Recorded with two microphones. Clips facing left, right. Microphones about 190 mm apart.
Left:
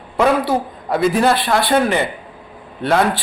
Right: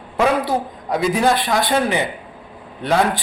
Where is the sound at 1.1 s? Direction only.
15° right (ahead or behind).